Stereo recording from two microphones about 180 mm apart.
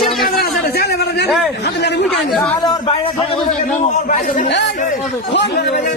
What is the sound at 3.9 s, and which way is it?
Speech, 45° left (ahead or behind).